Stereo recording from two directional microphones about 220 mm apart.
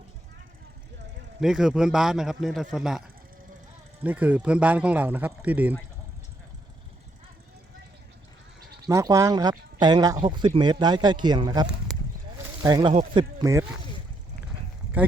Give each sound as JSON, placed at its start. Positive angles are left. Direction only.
{"t": 1.4, "sound": "a man's voice", "side_deg": 0}
{"t": 4.0, "sound": "speech", "side_deg": -5}
{"t": 8.9, "sound": "speech", "side_deg": -15}
{"t": 12.9, "sound": "speech", "side_deg": -30}
{"t": 13.4, "sound": "speech", "side_deg": -15}